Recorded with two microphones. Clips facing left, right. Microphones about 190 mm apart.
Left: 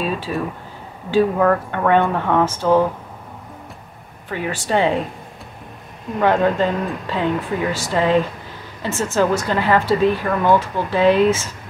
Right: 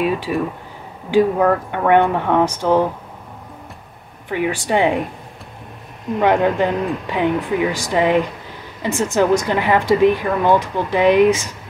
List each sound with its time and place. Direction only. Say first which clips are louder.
0.0 s speech: right 3 dB; 15° right (ahead or behind)
4.3 s speech: right 3 dB; 15° right (ahead or behind)
6.1 s speech: right 1 dB; 15° right (ahead or behind)